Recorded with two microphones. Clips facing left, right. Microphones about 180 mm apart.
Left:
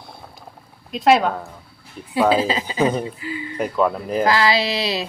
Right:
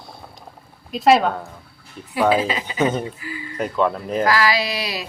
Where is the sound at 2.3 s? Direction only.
30° left (ahead or behind).